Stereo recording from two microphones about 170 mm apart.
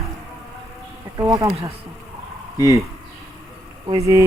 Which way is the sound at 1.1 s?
20° right (ahead or behind).